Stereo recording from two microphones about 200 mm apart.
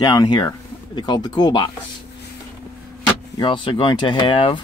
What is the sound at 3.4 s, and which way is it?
Speech, 25° left (ahead or behind).